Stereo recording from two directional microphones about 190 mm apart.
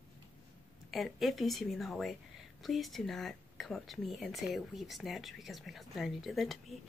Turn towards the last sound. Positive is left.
turn(degrees=0)  # may be behind; listen again after turning